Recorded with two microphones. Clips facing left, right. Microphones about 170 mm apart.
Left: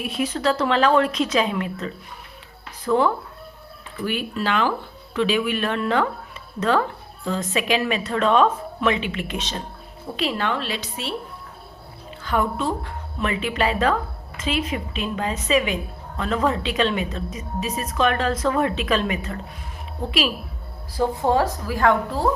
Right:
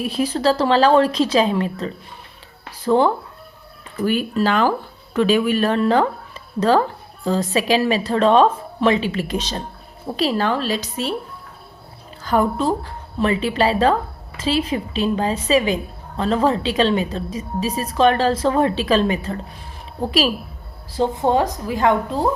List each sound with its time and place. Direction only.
0.0 s a woman's voice: 35° right (ahead or behind)
3.9 s a woman's voice: 40° right (ahead or behind)
12.2 s a woman's voice: 40° right (ahead or behind)
20.9 s a woman's voice: 20° right (ahead or behind)